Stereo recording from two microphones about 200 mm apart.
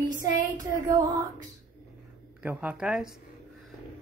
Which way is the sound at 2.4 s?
5° right (ahead or behind).